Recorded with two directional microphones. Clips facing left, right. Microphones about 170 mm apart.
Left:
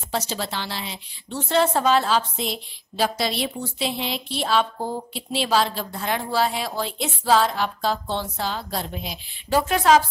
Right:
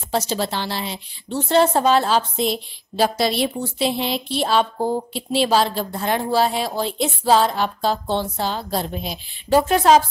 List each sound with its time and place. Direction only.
0.1 s a woman's voice: 30° right (ahead or behind)